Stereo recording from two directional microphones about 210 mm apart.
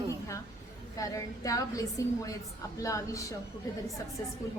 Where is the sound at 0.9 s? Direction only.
15° left (ahead or behind).